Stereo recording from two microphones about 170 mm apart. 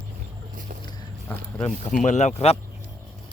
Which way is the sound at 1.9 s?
45° left (ahead or behind).